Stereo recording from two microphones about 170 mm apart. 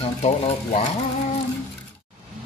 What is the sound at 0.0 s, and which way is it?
Speech, 40° left (ahead or behind).